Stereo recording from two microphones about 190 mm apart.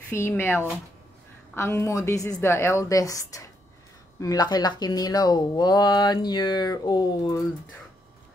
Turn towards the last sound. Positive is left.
turn(degrees=20)  # may be behind; listen again after turning